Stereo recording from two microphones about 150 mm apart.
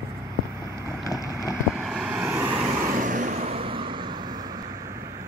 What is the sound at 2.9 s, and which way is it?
Vehicle, 60° right (ahead or behind).